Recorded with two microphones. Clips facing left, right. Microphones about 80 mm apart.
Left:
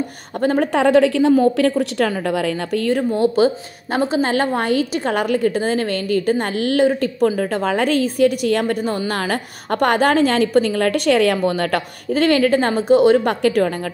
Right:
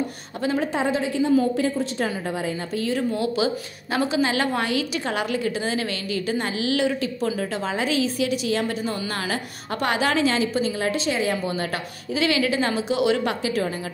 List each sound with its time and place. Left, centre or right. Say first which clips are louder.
0.4 s a woman's voice: left 7 dB; left
3.0 s a woman's voice: left 8 dB; left